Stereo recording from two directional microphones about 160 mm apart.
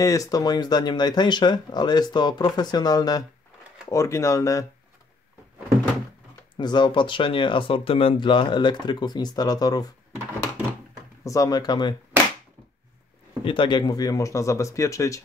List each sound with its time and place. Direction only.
0.0 s speech: 20° left (ahead or behind)
6.5 s speech: 25° left (ahead or behind)
11.2 s speech: 20° left (ahead or behind)
13.4 s speech: 30° left (ahead or behind)